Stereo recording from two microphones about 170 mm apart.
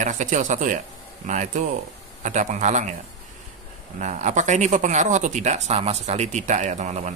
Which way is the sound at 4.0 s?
45° right (ahead or behind).